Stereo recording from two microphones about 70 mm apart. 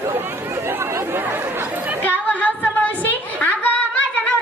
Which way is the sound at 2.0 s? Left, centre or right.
Left.